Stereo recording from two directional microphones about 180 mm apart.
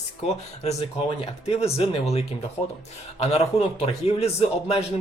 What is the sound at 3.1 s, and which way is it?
Speech, 35° left (ahead or behind).